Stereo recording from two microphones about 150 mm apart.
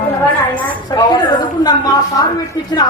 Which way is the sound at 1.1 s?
25° left (ahead or behind).